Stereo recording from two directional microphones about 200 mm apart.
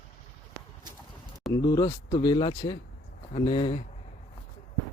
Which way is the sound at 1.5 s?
20° left (ahead or behind).